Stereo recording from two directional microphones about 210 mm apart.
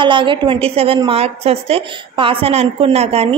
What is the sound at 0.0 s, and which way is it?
A woman's voice, 25° right (ahead or behind).